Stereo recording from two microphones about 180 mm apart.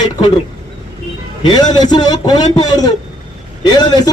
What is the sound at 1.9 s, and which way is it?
A man's voice, 25° left (ahead or behind).